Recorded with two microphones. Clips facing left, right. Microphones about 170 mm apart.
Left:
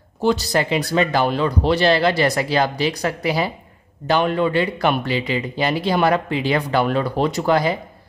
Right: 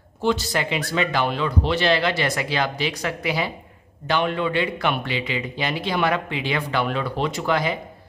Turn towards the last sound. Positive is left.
turn(degrees=40)  # may be behind; listen again after turning